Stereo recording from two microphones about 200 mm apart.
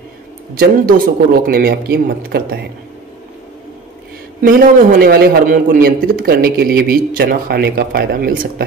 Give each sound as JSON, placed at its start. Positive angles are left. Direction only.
{"t": 0.6, "sound": "a man's voice", "side_deg": -45}
{"t": 4.4, "sound": "a man's voice", "side_deg": -45}